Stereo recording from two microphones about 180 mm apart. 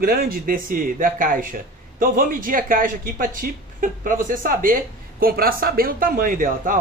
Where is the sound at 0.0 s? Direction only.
55° right (ahead or behind).